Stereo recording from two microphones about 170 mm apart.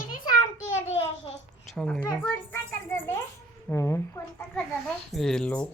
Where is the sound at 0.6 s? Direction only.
40° left (ahead or behind).